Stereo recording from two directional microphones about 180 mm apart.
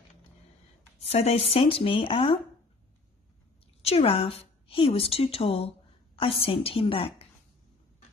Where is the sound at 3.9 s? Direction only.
35° left (ahead or behind).